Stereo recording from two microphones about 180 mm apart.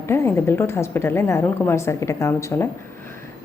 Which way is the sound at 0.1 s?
15° left (ahead or behind).